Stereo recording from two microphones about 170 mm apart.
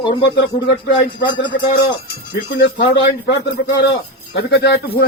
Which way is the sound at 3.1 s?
90° left.